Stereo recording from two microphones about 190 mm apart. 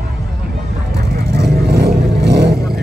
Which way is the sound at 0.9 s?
55° right (ahead or behind).